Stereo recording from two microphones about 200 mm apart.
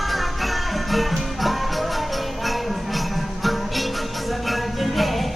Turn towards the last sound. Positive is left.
turn(degrees=0)  # may be behind; listen again after turning